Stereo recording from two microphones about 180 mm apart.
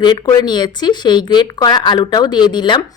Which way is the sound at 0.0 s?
25° left (ahead or behind).